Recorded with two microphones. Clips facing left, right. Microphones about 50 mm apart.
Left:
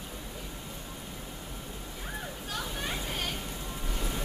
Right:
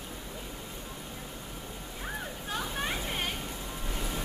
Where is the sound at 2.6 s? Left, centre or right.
Centre.